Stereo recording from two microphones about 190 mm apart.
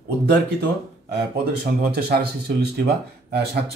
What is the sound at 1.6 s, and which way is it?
Speech, 55° right (ahead or behind).